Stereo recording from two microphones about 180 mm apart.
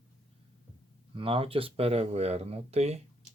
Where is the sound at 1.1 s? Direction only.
30° right (ahead or behind).